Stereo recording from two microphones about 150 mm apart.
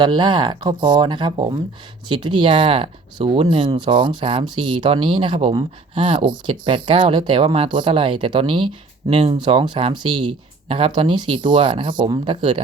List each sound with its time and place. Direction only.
0.0 s speech: 30° right (ahead or behind)